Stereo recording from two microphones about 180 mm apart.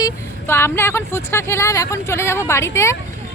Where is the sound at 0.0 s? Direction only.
15° left (ahead or behind).